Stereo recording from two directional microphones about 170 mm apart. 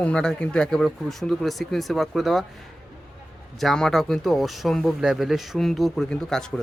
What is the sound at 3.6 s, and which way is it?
Speech, centre (ahead or behind).